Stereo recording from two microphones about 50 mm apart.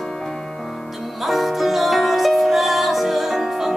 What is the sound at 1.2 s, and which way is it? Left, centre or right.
Music, centre.